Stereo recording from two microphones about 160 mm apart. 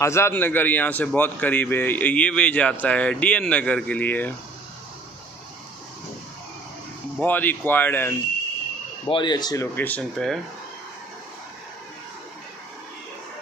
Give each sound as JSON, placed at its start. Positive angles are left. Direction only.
{"t": 0.0, "sound": "a man's voice", "side_deg": 15}
{"t": 7.2, "sound": "a man's voice", "side_deg": 10}
{"t": 9.0, "sound": "speech", "side_deg": 30}
{"t": 9.8, "sound": "speech", "side_deg": 10}